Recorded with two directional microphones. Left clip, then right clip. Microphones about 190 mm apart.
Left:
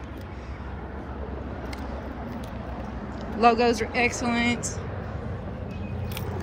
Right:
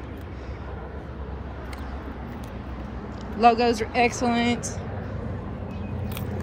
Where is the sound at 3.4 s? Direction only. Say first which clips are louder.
Right 1 dB; 15° right (ahead or behind).